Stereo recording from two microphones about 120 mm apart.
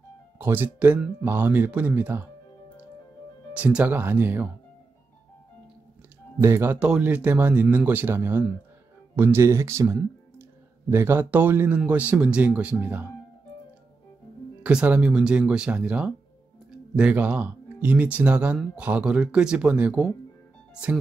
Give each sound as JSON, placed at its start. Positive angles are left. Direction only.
{"t": 0.4, "sound": "a man's voice", "side_deg": -15}
{"t": 3.5, "sound": "a man's voice", "side_deg": -10}
{"t": 6.4, "sound": "a man's voice", "side_deg": -20}
{"t": 14.6, "sound": "a man's voice", "side_deg": -10}